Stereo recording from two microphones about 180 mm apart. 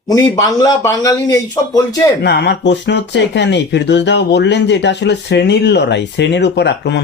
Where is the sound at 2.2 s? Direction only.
65° left (ahead or behind).